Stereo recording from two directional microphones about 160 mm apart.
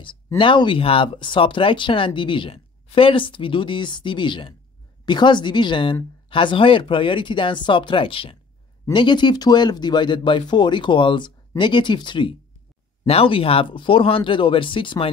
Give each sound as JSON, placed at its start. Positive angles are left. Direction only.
{"t": 0.4, "sound": "speech", "side_deg": 30}